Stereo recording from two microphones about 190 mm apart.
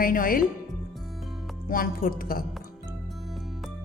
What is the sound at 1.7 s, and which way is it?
Speech, 50° left (ahead or behind).